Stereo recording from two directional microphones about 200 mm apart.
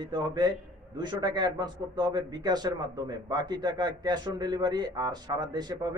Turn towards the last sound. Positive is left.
turn(degrees=-20)  # may be behind; listen again after turning